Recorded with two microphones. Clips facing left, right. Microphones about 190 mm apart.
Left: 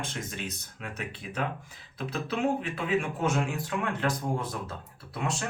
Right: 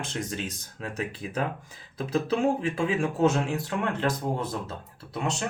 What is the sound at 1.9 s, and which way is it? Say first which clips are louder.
A man's voice: right 6 dB; 35° right (ahead or behind).